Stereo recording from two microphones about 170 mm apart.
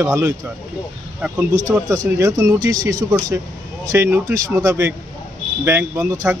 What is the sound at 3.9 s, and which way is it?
Speech, 15° right (ahead or behind).